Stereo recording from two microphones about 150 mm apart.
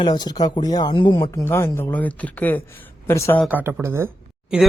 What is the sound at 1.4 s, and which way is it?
Speech, 15° left (ahead or behind).